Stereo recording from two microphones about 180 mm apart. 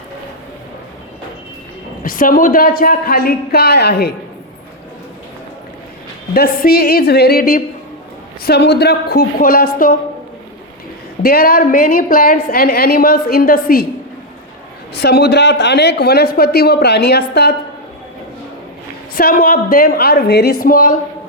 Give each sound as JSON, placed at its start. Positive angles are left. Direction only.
{"t": 2.0, "sound": "a woman's voice", "side_deg": 50}
{"t": 6.3, "sound": "a woman's voice", "side_deg": 60}
{"t": 8.4, "sound": "a woman's voice", "side_deg": 65}
{"t": 11.2, "sound": "a woman's voice", "side_deg": 60}
{"t": 14.9, "sound": "a woman's voice", "side_deg": 65}
{"t": 19.1, "sound": "a woman's voice", "side_deg": 55}